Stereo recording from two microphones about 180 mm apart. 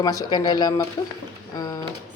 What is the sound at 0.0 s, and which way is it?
Speech, 20° left (ahead or behind).